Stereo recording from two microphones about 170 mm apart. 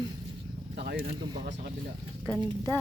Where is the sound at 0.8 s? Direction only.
75° right (ahead or behind).